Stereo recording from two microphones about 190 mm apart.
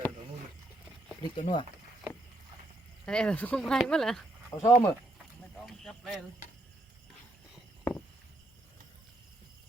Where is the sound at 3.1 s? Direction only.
5° left (ahead or behind).